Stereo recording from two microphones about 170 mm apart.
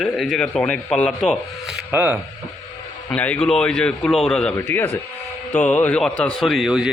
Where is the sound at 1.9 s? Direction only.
10° right (ahead or behind).